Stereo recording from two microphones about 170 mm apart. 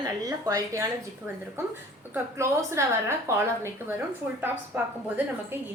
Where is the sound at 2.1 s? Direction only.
15° right (ahead or behind).